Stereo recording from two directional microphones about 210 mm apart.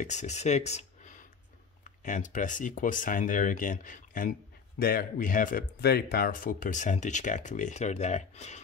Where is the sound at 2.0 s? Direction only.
35° left (ahead or behind).